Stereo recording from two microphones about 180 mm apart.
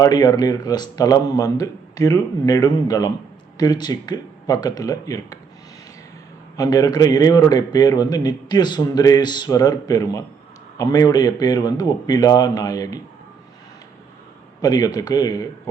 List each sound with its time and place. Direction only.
0.0 s a man's voice: 20° left (ahead or behind)
6.6 s a man's voice: 20° left (ahead or behind)
14.6 s a man's voice: 20° left (ahead or behind)